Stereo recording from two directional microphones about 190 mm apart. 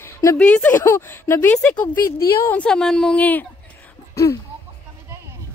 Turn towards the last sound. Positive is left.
turn(degrees=15)  # may be behind; listen again after turning